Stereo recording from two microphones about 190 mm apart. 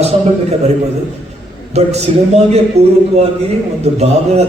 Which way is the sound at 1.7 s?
35° right (ahead or behind).